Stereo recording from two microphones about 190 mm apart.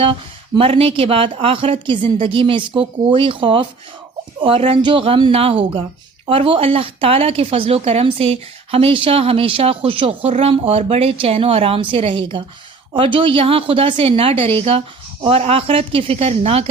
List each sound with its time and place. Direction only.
0.0 s a woman's voice: 25° right (ahead or behind)